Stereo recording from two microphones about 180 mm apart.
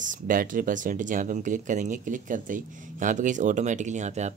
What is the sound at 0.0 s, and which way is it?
Speech, 45° right (ahead or behind).